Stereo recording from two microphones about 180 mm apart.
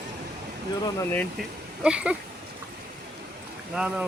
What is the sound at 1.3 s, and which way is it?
Speech, 5° right (ahead or behind).